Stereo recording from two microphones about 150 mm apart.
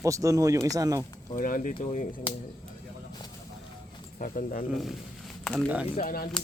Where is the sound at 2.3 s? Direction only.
35° left (ahead or behind).